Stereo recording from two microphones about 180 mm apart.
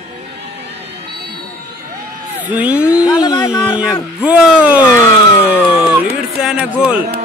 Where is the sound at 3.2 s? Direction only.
25° left (ahead or behind).